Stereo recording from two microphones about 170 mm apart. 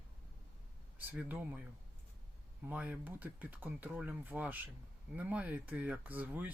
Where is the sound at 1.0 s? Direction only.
10° right (ahead or behind).